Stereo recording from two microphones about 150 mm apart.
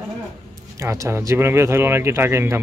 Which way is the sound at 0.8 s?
20° right (ahead or behind).